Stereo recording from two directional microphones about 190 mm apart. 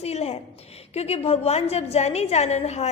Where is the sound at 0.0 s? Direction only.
35° left (ahead or behind).